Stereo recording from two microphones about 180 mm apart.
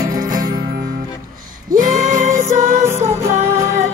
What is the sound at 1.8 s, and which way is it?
Music, 45° right (ahead or behind).